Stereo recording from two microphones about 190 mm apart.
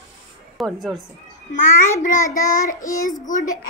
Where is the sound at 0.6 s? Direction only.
Centre (ahead or behind).